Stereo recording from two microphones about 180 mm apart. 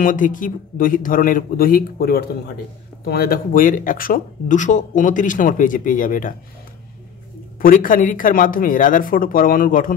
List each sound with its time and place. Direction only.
0.0 s speech: 50° left (ahead or behind)
7.6 s speech: 50° left (ahead or behind)